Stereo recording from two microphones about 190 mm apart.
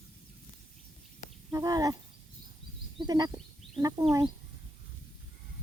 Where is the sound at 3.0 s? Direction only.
20° right (ahead or behind).